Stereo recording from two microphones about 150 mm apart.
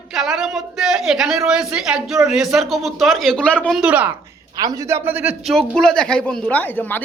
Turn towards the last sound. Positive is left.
turn(degrees=10)  # may be behind; listen again after turning